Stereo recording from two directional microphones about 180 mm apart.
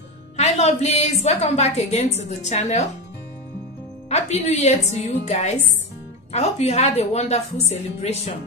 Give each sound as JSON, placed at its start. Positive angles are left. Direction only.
{"t": 0.4, "sound": "a woman's voice", "side_deg": 40}
{"t": 4.1, "sound": "a woman's voice", "side_deg": 40}